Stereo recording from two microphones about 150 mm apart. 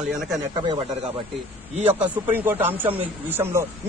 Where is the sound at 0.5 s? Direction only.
30° right (ahead or behind).